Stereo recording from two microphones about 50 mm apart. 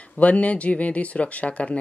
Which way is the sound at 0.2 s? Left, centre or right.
Left.